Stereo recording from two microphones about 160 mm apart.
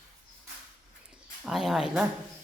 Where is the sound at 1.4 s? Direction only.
Centre (ahead or behind).